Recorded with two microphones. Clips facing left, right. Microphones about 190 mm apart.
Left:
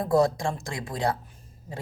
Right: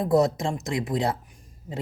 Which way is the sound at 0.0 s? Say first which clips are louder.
Right 1 dB; 20° right (ahead or behind).